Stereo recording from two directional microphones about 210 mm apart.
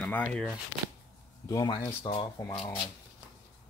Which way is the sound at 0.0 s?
5° left (ahead or behind).